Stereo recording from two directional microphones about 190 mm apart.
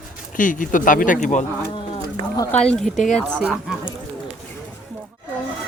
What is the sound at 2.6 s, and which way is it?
Speech, centre (ahead or behind).